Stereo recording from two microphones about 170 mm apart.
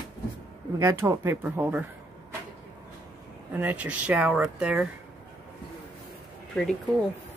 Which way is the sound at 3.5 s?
10° right (ahead or behind).